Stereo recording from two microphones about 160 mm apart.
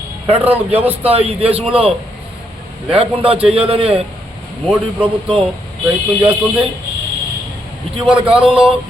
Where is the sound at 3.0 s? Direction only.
35° right (ahead or behind).